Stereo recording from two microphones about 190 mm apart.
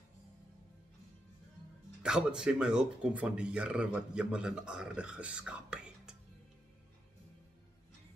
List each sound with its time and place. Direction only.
2.0 s speech: 5° right (ahead or behind)